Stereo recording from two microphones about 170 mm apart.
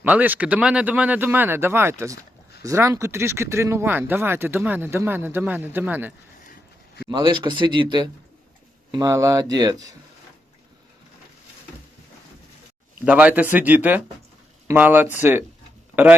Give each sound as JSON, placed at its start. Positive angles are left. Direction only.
{"t": 0.0, "sound": "speech", "side_deg": -10}
{"t": 7.1, "sound": "speech", "side_deg": -25}
{"t": 13.1, "sound": "speech", "side_deg": -10}